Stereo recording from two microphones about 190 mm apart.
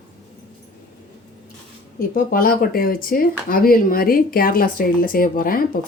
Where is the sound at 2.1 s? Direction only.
50° left (ahead or behind).